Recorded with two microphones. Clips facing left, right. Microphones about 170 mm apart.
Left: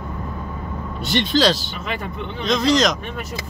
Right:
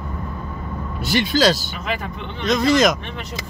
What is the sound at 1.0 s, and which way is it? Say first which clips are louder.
Speech: right 1 dB; 5° right (ahead or behind).